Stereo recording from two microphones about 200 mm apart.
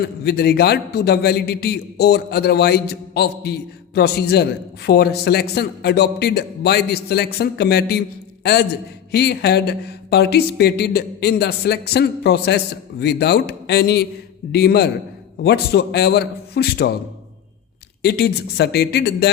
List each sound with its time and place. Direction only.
0.0 s a man's voice: 55° left (ahead or behind)
18.0 s a man's voice: 55° left (ahead or behind)